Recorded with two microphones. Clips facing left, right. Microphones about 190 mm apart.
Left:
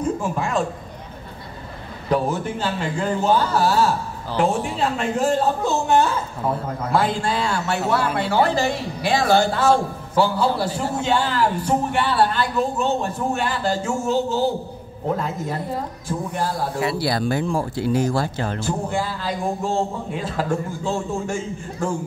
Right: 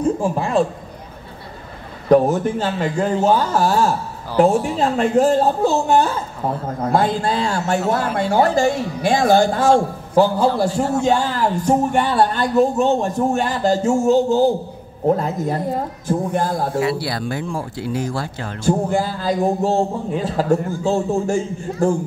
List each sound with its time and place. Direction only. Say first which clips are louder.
0.0 s a woman's voice: right 4 dB; 35° right (ahead or behind)
2.0 s a man's voice: right 8 dB; 45° right (ahead or behind)
17.1 s speech: left 3 dB; 40° left (ahead or behind)
18.6 s speech: right 10 dB; 45° right (ahead or behind)